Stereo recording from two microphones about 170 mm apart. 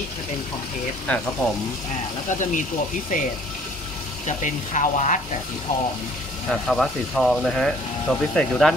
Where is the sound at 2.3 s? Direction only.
45° left (ahead or behind).